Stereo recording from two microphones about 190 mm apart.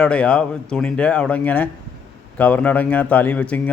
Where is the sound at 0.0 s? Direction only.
5° left (ahead or behind).